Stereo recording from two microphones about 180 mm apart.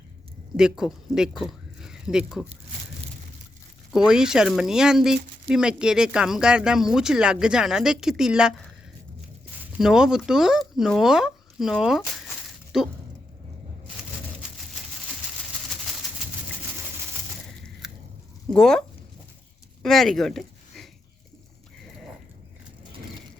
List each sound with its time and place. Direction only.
0.5 s speech: 5° right (ahead or behind)
3.9 s speech: 5° right (ahead or behind)
9.7 s speech: 5° right (ahead or behind)
17.8 s biting: centre (ahead or behind)
18.5 s speech: 5° left (ahead or behind)
19.8 s a sound: centre (ahead or behind)